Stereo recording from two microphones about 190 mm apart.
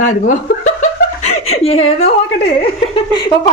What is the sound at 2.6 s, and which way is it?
Laughter, 25° left (ahead or behind).